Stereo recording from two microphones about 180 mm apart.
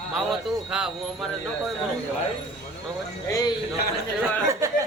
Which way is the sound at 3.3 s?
20° left (ahead or behind).